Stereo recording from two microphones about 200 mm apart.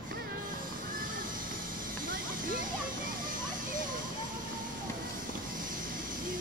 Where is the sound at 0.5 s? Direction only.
45° right (ahead or behind).